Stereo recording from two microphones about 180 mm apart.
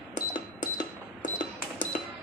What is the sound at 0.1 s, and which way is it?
Cash register, 45° left (ahead or behind).